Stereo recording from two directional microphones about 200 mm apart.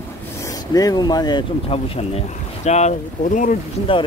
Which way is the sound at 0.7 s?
20° left (ahead or behind).